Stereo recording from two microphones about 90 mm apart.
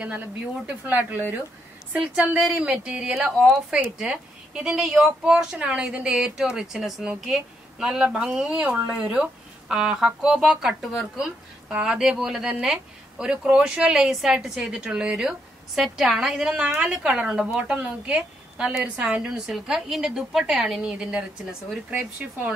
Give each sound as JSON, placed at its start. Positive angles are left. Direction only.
{"t": 0.0, "sound": "a woman's voice", "side_deg": -15}